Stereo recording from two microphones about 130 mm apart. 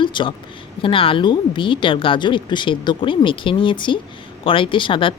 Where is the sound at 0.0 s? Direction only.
40° left (ahead or behind).